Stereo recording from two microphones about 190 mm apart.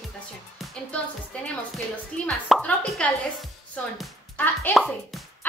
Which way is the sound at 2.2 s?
5° left (ahead or behind).